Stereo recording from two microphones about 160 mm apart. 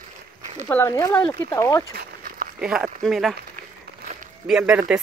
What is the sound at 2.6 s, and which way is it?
Speech, 5° right (ahead or behind).